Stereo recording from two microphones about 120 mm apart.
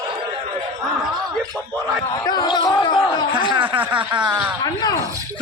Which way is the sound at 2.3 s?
35° left (ahead or behind).